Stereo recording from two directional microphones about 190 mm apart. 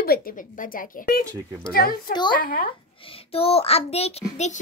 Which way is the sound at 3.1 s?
30° left (ahead or behind).